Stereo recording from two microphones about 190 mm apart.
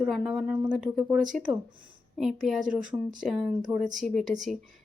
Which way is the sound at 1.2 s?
45° right (ahead or behind).